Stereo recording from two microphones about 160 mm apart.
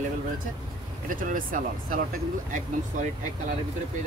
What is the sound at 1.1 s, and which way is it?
Speech, 60° right (ahead or behind).